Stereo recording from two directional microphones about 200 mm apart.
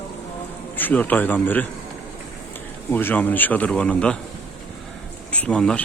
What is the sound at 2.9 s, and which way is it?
Speech, 10° left (ahead or behind).